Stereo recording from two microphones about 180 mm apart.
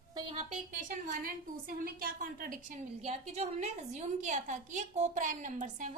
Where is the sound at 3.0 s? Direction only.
40° right (ahead or behind).